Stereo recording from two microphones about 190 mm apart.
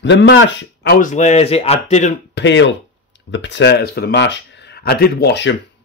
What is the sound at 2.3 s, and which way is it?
Speech, 70° left (ahead or behind).